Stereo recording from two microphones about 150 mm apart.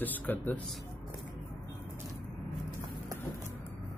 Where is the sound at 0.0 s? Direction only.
10° left (ahead or behind).